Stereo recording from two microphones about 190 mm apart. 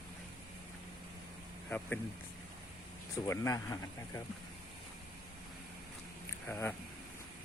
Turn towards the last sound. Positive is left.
turn(degrees=10)  # may be behind; listen again after turning